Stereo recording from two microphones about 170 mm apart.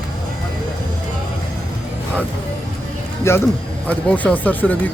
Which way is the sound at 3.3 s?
15° left (ahead or behind).